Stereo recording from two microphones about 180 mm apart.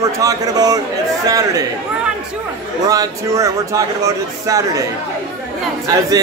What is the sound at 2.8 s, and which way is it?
Speech, 20° right (ahead or behind).